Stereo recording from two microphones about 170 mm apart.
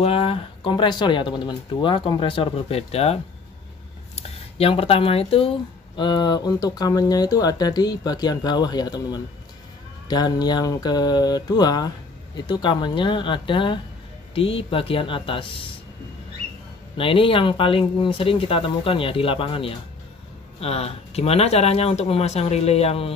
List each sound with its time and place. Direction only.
0.0 s speech: 35° left (ahead or behind)
16.9 s speech: 30° left (ahead or behind)